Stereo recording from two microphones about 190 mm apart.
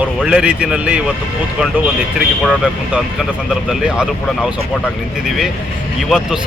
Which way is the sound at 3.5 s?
5° right (ahead or behind).